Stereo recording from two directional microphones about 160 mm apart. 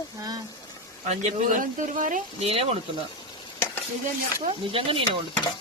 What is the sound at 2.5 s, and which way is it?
Speech, 40° right (ahead or behind).